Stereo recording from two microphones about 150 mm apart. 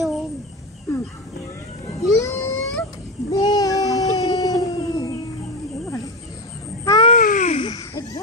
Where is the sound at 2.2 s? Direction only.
20° left (ahead or behind).